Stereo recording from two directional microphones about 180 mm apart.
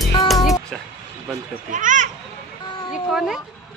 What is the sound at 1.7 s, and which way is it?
Speech, 45° right (ahead or behind).